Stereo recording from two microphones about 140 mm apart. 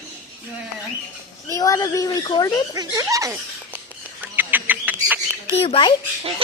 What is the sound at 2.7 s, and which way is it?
Speech, 25° right (ahead or behind).